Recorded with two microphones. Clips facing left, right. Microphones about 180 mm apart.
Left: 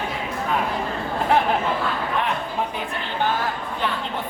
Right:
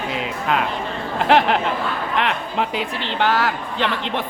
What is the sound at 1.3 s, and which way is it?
Speech, 85° right.